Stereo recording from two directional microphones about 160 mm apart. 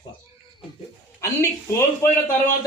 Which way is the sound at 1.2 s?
15° left (ahead or behind).